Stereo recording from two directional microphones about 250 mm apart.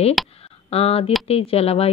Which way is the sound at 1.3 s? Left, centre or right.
Left.